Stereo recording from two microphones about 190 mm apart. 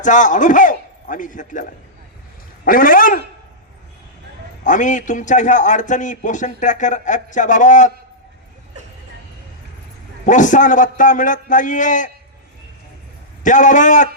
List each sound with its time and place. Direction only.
0.0 s a man's voice: 40° left (ahead or behind)
4.6 s a man's voice: 40° left (ahead or behind)
10.2 s a man's voice: 40° left (ahead or behind)
13.4 s a man's voice: 40° left (ahead or behind)